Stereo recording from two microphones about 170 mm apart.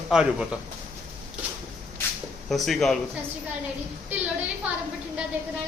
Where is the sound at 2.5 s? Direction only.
Centre (ahead or behind).